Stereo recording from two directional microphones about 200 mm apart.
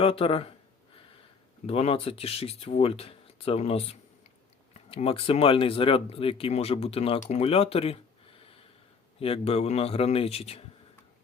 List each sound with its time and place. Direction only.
0.0 s speech: 25° left (ahead or behind)
1.6 s speech: 30° left (ahead or behind)
4.9 s speech: 30° left (ahead or behind)